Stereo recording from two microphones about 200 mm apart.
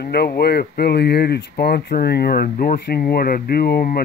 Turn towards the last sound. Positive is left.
turn(degrees=50)  # may be behind; listen again after turning